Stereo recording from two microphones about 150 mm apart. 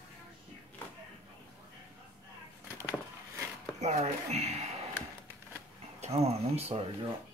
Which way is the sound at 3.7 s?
50° right (ahead or behind).